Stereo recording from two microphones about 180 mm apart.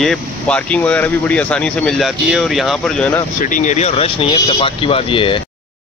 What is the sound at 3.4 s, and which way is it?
Speech, 45° left (ahead or behind).